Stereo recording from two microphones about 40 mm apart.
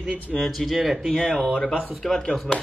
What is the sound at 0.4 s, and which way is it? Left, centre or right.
Speech, centre.